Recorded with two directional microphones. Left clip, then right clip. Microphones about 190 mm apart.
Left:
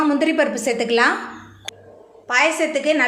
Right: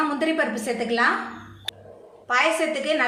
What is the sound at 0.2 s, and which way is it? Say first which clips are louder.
Speech: left 5 dB; 35° left (ahead or behind).